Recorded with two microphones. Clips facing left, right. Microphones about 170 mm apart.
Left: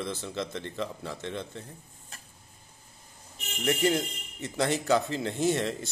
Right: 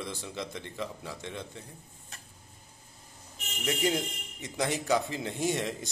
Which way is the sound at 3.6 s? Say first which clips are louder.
Left 3 dB; 15° right (ahead or behind).